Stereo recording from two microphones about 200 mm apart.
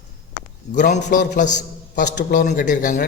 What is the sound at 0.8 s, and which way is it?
Speech, 40° left (ahead or behind).